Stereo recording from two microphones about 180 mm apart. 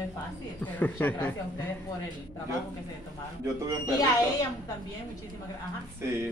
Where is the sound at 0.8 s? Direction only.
10° left (ahead or behind).